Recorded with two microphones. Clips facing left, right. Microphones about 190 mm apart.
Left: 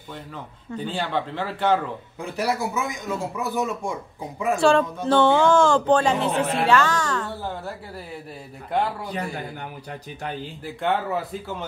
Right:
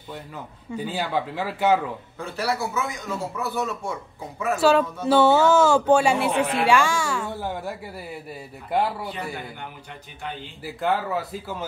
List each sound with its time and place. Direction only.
0.7 s speech: 10° right (ahead or behind)
2.1 s a man's voice: 15° left (ahead or behind)
4.6 s speech: 5° right (ahead or behind)
10.6 s speech: centre (ahead or behind)